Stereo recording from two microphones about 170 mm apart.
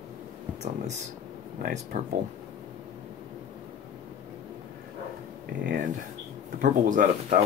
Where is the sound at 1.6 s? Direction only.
55° right (ahead or behind).